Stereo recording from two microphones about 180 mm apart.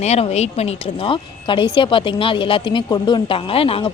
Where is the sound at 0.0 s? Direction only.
35° left (ahead or behind).